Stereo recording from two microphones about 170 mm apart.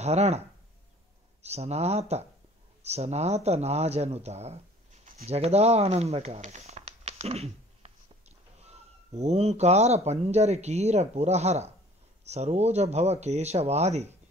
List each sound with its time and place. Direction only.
0.0 s speech: 40° right (ahead or behind)
1.4 s speech: 40° right (ahead or behind)